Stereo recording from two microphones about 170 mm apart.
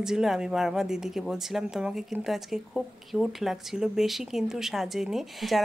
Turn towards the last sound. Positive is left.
turn(degrees=0)  # may be behind; listen again after turning